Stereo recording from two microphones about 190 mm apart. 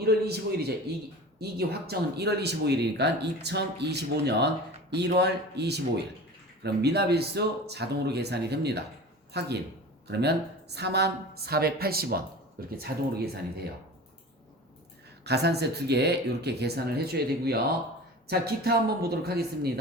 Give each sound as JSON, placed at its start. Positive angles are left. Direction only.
{"t": 0.0, "sound": "speech", "side_deg": -60}
{"t": 15.2, "sound": "speech", "side_deg": -60}